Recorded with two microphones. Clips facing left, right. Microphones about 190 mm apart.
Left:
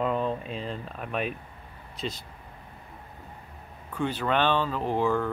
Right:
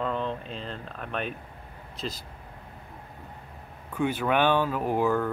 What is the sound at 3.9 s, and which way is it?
Speech, 10° right (ahead or behind).